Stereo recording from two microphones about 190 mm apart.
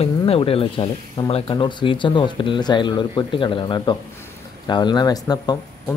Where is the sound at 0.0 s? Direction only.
30° left (ahead or behind).